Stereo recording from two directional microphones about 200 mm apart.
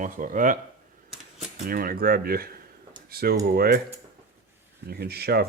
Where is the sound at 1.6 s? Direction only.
45° right (ahead or behind).